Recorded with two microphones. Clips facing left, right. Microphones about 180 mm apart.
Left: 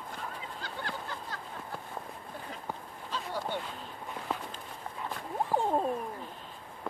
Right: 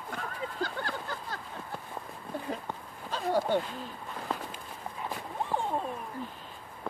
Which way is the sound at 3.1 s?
45° right (ahead or behind).